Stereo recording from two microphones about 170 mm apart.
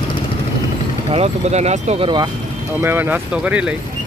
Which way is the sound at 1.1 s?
40° right (ahead or behind).